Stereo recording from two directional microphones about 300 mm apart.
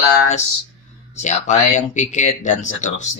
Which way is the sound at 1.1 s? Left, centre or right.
Left.